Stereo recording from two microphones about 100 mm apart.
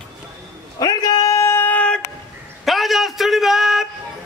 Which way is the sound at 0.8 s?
40° left (ahead or behind).